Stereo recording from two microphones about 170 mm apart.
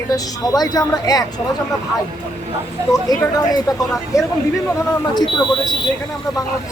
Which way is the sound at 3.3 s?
20° left (ahead or behind).